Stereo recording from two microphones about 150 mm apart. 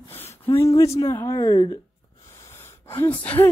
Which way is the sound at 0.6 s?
20° left (ahead or behind).